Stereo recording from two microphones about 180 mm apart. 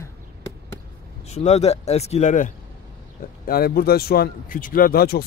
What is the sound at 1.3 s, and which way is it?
Speech, 40° left (ahead or behind).